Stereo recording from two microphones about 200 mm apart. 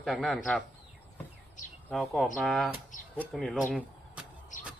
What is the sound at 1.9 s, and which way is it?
A man's voice, centre (ahead or behind).